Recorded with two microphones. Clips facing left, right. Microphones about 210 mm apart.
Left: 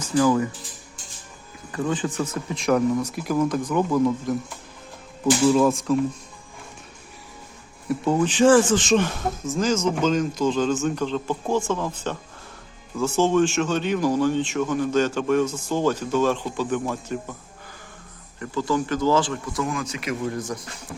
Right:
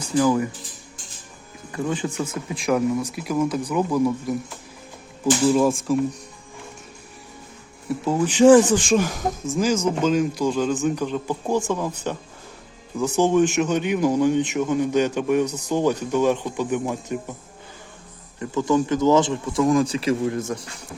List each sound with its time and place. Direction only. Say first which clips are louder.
0.0 s a man's voice: even; 15° right (ahead or behind)
1.7 s a man's voice: even; 10° right (ahead or behind)
7.9 s speech: left 1 dB; centre (ahead or behind)
8.3 s a man's voice: right 5 dB; 15° right (ahead or behind)
18.3 s speech: right 4 dB; 20° right (ahead or behind)
19.6 s speech: right 9 dB; 35° right (ahead or behind)